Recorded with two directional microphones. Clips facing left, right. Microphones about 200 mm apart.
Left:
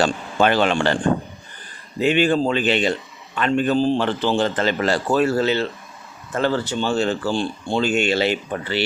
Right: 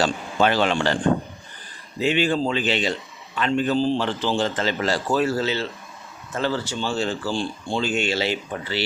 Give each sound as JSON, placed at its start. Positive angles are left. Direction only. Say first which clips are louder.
{"t": 0.0, "sound": "speech", "louder": "left 2 dB", "side_deg": 55}
{"t": 2.0, "sound": "speech", "louder": "left 3 dB", "side_deg": 55}